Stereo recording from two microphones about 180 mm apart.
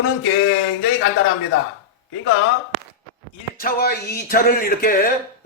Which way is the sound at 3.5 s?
55° left (ahead or behind).